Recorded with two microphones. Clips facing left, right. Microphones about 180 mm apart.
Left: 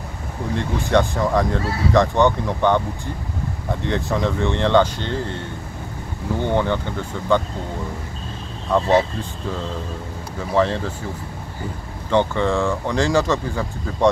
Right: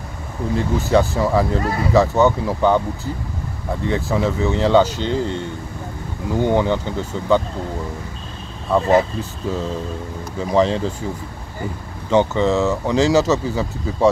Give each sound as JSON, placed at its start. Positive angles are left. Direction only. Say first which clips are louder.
{"t": 0.6, "sound": "speech", "louder": "right 2 dB", "side_deg": -5}
{"t": 1.6, "sound": "speech", "louder": "right 2 dB", "side_deg": -60}
{"t": 2.0, "sound": "speech", "louder": "right 2 dB", "side_deg": -5}
{"t": 3.8, "sound": "speech", "louder": "right 2 dB", "side_deg": 0}
{"t": 6.3, "sound": "speech", "louder": "right 3 dB", "side_deg": -10}
{"t": 8.6, "sound": "speech", "louder": "right 2 dB", "side_deg": -5}
{"t": 10.5, "sound": "speech", "louder": "right 2 dB", "side_deg": -15}
{"t": 12.1, "sound": "speech", "louder": "right 3 dB", "side_deg": -10}